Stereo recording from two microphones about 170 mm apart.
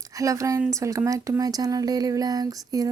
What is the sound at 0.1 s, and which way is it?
A woman's voice, 20° right (ahead or behind).